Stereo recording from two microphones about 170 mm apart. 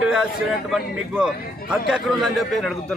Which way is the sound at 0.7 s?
5° right (ahead or behind).